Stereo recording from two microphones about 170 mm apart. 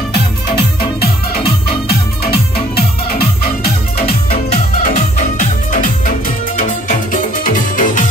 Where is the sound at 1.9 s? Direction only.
65° left (ahead or behind).